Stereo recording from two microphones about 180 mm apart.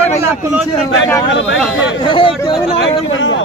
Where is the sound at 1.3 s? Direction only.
90° left.